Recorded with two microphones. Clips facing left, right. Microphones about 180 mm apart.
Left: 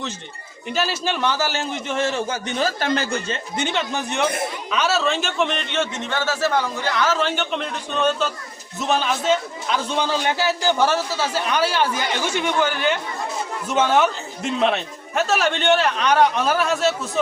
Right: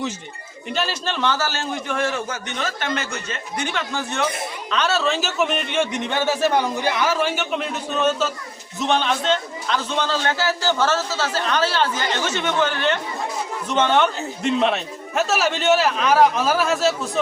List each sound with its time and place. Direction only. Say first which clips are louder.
0.7 s a man's voice: left 2 dB; 5° left (ahead or behind); by 4.2 s 20° left (ahead or behind)
4.7 s a man's voice: even; 5° left (ahead or behind)